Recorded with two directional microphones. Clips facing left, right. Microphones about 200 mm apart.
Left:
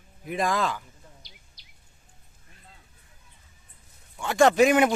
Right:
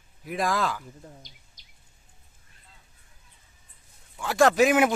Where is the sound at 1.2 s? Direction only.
45° right (ahead or behind).